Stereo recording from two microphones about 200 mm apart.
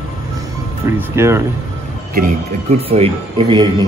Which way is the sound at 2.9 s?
25° right (ahead or behind).